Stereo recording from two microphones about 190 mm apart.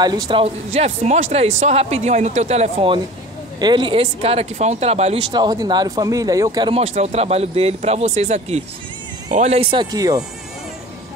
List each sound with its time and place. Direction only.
0.0 s speech: 25° right (ahead or behind)
0.7 s speech: 35° right (ahead or behind)
5.3 s speech: 20° right (ahead or behind)
6.8 s speech: 35° right (ahead or behind); by 10.2 s 20° right (ahead or behind)